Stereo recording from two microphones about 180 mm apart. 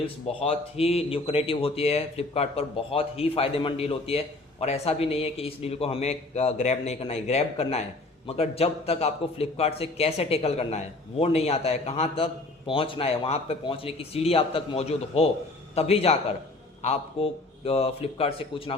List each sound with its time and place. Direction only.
0.0 s a man's voice: 35° left (ahead or behind)